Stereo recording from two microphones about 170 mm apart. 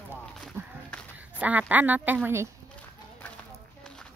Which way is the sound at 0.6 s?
15° right (ahead or behind).